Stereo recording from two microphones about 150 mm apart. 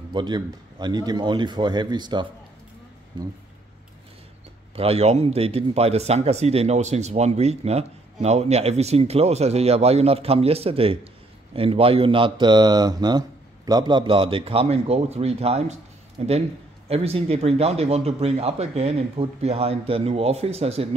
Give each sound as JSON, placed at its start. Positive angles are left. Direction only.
{"t": 0.1, "sound": "a man's voice", "side_deg": -30}
{"t": 4.7, "sound": "a man's voice", "side_deg": -40}